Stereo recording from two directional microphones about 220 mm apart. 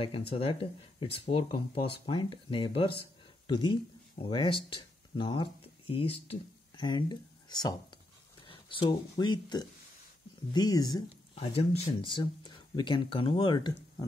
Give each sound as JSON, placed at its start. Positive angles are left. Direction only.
{"t": 0.0, "sound": "speech", "side_deg": 25}